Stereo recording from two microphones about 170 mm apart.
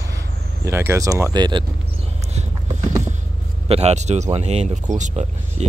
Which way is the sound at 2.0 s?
40° right (ahead or behind).